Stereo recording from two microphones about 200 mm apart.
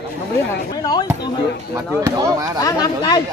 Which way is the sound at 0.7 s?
20° left (ahead or behind).